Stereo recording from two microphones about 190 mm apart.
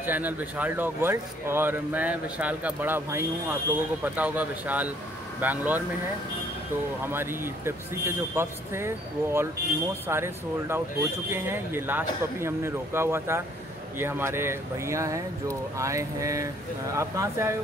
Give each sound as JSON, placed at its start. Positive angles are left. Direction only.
{"t": 0.0, "sound": "speech", "side_deg": -10}
{"t": 7.1, "sound": "speech", "side_deg": -10}